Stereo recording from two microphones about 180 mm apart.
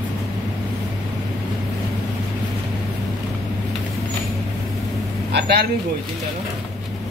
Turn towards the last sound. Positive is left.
turn(degrees=-65)  # may be behind; listen again after turning